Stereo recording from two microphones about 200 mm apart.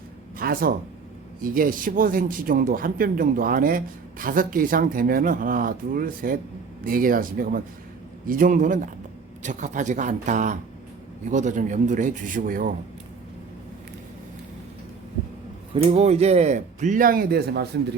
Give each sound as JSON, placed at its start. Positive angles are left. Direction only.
{"t": 0.3, "sound": "speech", "side_deg": -45}
{"t": 15.7, "sound": "speech", "side_deg": -30}